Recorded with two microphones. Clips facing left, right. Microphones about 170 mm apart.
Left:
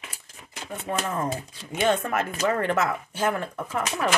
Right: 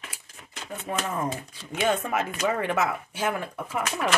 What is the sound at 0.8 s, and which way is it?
Speech, centre (ahead or behind).